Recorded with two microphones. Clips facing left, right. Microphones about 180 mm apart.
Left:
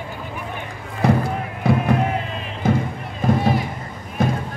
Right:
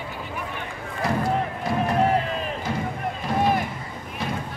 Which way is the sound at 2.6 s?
55° left (ahead or behind).